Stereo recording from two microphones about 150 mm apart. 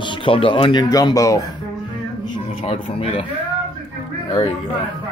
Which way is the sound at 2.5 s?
40° left (ahead or behind).